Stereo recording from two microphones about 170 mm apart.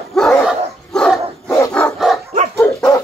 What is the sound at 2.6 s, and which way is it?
Dog, 15° left (ahead or behind).